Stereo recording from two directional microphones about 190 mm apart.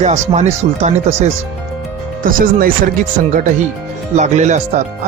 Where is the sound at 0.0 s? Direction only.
35° right (ahead or behind).